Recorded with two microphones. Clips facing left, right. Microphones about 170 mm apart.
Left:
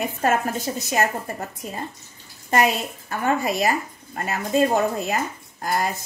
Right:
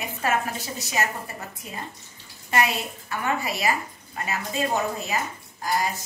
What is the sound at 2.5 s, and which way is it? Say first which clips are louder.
Speech: left 4 dB; 45° left (ahead or behind).